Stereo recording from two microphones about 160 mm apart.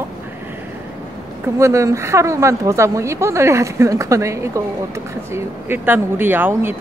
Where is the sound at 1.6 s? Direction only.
20° right (ahead or behind).